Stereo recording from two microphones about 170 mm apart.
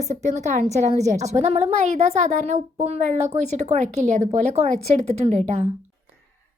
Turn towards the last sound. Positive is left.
turn(degrees=-40)  # may be behind; listen again after turning